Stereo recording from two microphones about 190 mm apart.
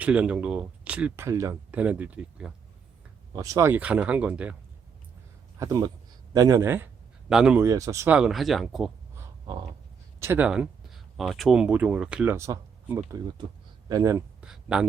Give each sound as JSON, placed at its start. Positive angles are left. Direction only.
{"t": 0.0, "sound": "speech", "side_deg": -5}
{"t": 3.3, "sound": "speech", "side_deg": -15}
{"t": 5.5, "sound": "speech", "side_deg": -20}
{"t": 10.2, "sound": "speech", "side_deg": -10}
{"t": 14.4, "sound": "speech", "side_deg": -5}